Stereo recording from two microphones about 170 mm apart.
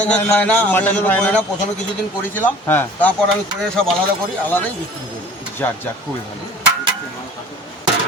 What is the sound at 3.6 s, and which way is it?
Speech, 5° left (ahead or behind).